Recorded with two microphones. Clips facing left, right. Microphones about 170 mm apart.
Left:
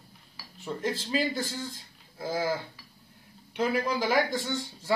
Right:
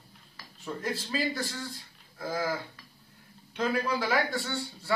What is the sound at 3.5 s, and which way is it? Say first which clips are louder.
Speech: left 1 dB; 15° left (ahead or behind).